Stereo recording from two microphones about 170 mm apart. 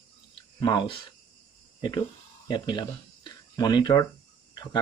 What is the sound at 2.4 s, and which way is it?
Speech, 25° left (ahead or behind).